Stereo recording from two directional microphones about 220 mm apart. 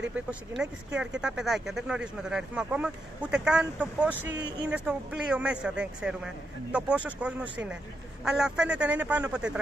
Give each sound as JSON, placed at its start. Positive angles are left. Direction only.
{"t": 0.1, "sound": "speech", "side_deg": -5}
{"t": 4.3, "sound": "speech", "side_deg": -55}
{"t": 4.6, "sound": "speech", "side_deg": -5}